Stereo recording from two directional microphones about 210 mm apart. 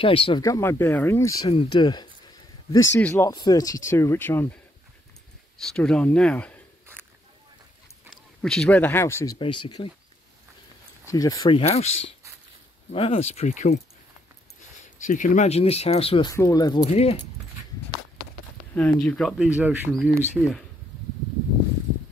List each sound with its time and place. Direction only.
0.0 s speech: 25° left (ahead or behind)
0.4 s speech: 15° left (ahead or behind)
1.5 s speech: 25° left (ahead or behind)
3.0 s speech: 10° left (ahead or behind)
5.6 s speech: centre (ahead or behind)
8.1 s speech: centre (ahead or behind); by 9.8 s 20° left (ahead or behind)
11.1 s speech: 15° left (ahead or behind)
15.0 s speech: 40° left (ahead or behind); by 16.8 s 20° left (ahead or behind)
16.8 s speech: 30° left (ahead or behind)
18.8 s speech: 5° left (ahead or behind)